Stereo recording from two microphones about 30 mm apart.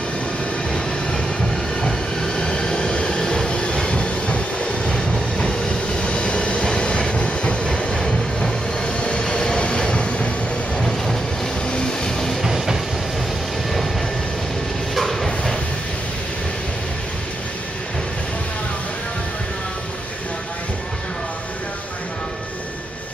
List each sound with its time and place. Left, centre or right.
0.7 s vehicle: left
1.8 s train: centre
3.3 s vehicle: left
3.5 s train: left
7.6 s train: left
8.8 s vehicle: left
9.8 s train: left
10.8 s vehicle: centre
11.6 s vehicle: left
12.4 s train: centre
15.0 s a sound: centre